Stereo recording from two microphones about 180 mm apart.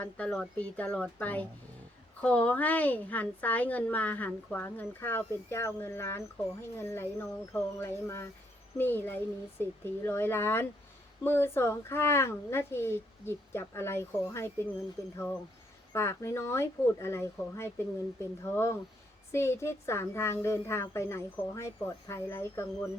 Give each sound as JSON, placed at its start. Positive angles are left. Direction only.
{"t": 0.0, "sound": "a woman's voice", "side_deg": 5}